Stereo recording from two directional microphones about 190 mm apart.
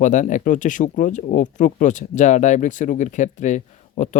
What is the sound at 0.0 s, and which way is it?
Speech, 40° left (ahead or behind).